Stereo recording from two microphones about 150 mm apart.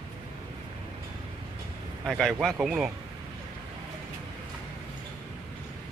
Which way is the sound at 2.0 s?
Centre (ahead or behind).